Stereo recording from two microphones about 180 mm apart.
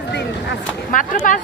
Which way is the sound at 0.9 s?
45° left (ahead or behind).